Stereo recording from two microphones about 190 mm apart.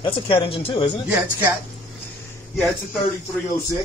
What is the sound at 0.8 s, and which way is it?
Speech, 5° right (ahead or behind).